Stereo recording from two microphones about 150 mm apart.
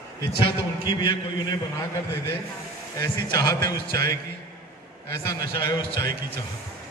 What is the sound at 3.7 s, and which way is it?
A man's voice, 90° right.